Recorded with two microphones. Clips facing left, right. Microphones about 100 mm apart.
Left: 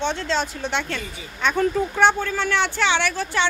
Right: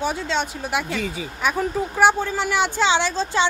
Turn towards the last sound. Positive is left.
turn(degrees=-20)  # may be behind; listen again after turning